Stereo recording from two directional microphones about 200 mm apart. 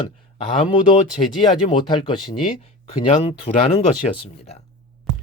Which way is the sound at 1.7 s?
25° left (ahead or behind).